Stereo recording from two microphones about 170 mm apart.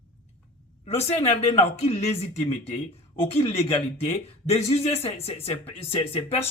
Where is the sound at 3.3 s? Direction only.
35° left (ahead or behind).